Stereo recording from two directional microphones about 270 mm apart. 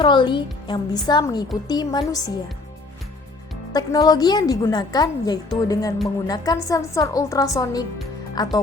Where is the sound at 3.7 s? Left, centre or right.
Centre.